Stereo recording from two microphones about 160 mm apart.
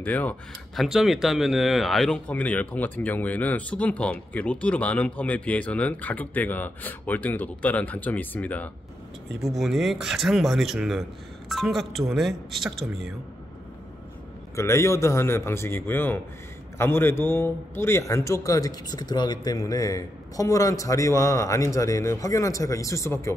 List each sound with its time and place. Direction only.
0.0 s speech: 10° left (ahead or behind)
0.8 s speech: centre (ahead or behind)
9.4 s speech: centre (ahead or behind)
14.5 s a man's voice: 20° left (ahead or behind)